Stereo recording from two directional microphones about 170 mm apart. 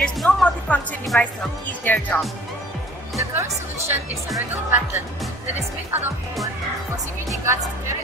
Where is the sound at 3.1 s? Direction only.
15° right (ahead or behind).